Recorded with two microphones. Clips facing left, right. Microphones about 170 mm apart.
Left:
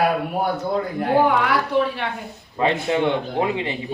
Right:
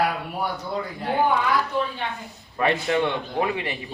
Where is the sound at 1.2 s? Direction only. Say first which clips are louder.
Left 3 dB; 80° left.